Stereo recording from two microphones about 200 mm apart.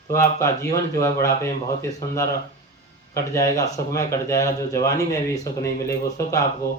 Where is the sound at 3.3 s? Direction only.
15° left (ahead or behind).